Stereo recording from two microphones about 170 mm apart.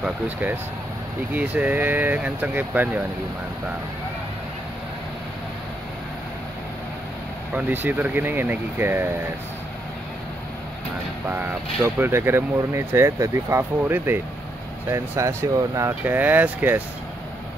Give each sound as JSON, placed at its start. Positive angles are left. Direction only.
{"t": 0.0, "sound": "speech", "side_deg": -10}
{"t": 7.5, "sound": "speech", "side_deg": -10}
{"t": 11.2, "sound": "speech", "side_deg": -10}